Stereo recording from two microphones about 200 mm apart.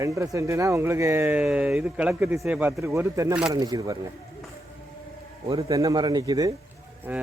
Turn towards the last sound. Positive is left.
turn(degrees=-10)  # may be behind; listen again after turning